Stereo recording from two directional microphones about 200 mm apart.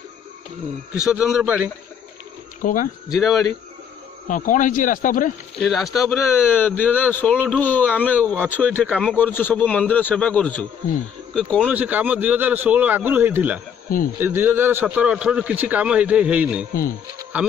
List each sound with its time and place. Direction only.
0.9 s a man's voice: 5° right (ahead or behind)
2.6 s speech: 40° left (ahead or behind)
3.1 s a man's voice: centre (ahead or behind)
4.3 s speech: 40° left (ahead or behind)
5.6 s a man's voice: centre (ahead or behind)
8.8 s a man's voice: 5° right (ahead or behind)
9.1 s a man's voice: 10° left (ahead or behind)
11.7 s a man's voice: 10° right (ahead or behind)
17.2 s insect: 5° right (ahead or behind)